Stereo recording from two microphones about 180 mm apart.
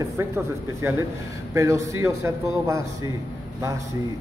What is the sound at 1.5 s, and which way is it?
Speech, 15° right (ahead or behind).